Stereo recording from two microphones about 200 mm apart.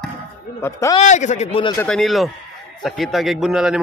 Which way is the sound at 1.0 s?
35° left (ahead or behind).